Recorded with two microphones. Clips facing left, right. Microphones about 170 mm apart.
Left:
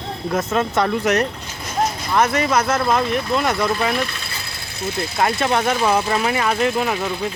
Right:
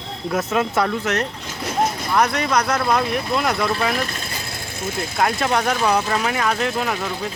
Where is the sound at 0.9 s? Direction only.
10° left (ahead or behind).